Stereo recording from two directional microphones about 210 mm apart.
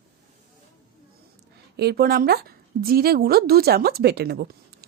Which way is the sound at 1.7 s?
50° right (ahead or behind).